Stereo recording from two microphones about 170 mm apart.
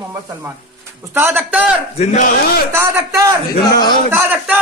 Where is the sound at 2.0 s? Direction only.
45° left (ahead or behind).